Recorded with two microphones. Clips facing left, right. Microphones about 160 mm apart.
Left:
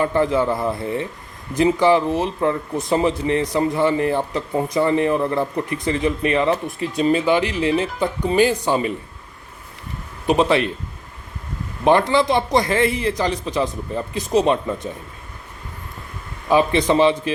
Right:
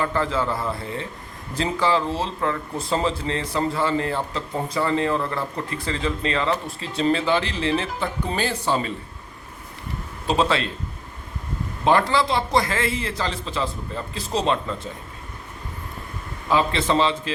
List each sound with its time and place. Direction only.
0.0 s speech: 20° left (ahead or behind)
10.2 s speech: 20° left (ahead or behind)
11.9 s speech: 20° left (ahead or behind)
16.5 s speech: 15° left (ahead or behind)